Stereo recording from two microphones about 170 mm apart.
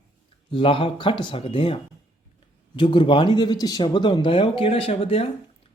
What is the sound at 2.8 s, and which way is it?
Speech, 30° left (ahead or behind).